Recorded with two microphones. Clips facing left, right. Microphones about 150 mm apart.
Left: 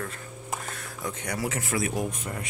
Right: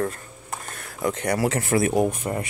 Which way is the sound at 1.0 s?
75° right (ahead or behind).